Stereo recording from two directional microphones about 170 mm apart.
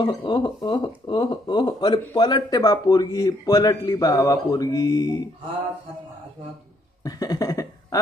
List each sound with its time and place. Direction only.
0.0 s speech: 25° left (ahead or behind)
7.1 s cough: 20° left (ahead or behind)